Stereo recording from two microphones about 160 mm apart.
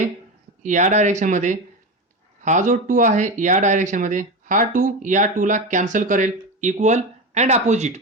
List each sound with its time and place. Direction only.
0.6 s speech: 50° right (ahead or behind)